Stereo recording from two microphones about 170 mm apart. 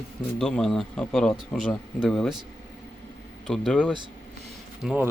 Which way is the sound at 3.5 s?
5° left (ahead or behind).